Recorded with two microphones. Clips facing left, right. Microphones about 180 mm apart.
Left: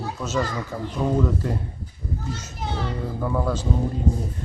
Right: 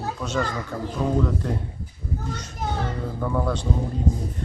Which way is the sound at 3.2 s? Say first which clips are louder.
Even; 5° left (ahead or behind).